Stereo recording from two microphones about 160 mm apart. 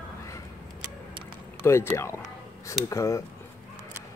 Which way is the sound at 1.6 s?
15° left (ahead or behind).